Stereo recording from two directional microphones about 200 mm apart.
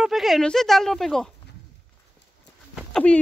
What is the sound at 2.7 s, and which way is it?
Dog, 5° left (ahead or behind).